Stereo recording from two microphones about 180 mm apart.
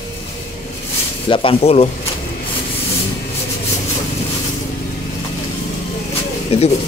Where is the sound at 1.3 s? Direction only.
30° left (ahead or behind).